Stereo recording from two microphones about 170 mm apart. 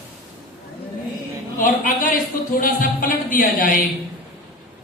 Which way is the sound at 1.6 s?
55° left (ahead or behind).